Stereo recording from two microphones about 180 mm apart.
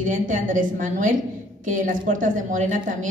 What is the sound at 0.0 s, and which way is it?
A woman's voice, 45° right (ahead or behind).